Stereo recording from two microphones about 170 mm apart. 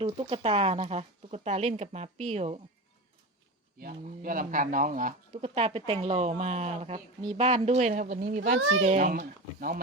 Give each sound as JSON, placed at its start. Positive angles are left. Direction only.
{"t": 0.0, "sound": "speech", "side_deg": -35}
{"t": 3.8, "sound": "speech", "side_deg": -55}